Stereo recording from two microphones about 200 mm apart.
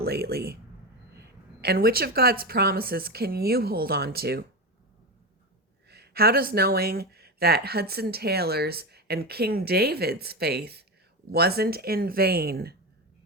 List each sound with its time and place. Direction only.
0.0 s speech: 50° right (ahead or behind)
1.6 s speech: 50° right (ahead or behind)
5.9 s speech: 50° right (ahead or behind)